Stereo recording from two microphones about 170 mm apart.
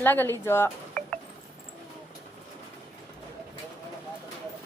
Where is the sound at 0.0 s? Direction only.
10° left (ahead or behind).